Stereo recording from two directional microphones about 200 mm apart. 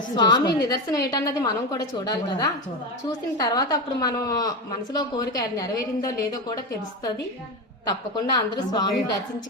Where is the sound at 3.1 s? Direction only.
20° left (ahead or behind).